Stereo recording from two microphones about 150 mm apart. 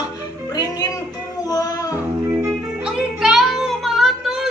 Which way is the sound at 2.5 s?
5° right (ahead or behind).